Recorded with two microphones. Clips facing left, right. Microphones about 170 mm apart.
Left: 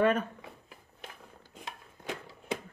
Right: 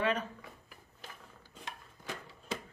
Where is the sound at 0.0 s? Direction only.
50° left (ahead or behind).